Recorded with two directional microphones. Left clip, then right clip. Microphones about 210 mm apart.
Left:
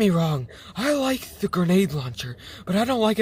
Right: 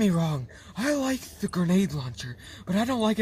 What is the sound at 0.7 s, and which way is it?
Speech, 75° left (ahead or behind).